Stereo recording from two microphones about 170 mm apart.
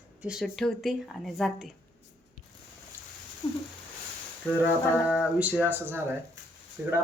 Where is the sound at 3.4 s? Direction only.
25° left (ahead or behind).